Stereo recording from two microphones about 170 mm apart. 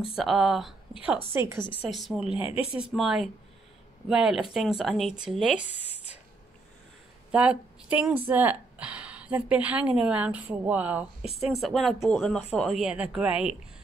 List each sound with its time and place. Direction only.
0.1 s speech: centre (ahead or behind)
1.3 s a woman's voice: 15° right (ahead or behind)
1.9 s speech: centre (ahead or behind)
2.4 s speech: 35° left (ahead or behind)
2.8 s speech: 5° right (ahead or behind)
7.2 s speech: 5° right (ahead or behind)
11.2 s speech: 35° left (ahead or behind)
11.5 s speech: centre (ahead or behind)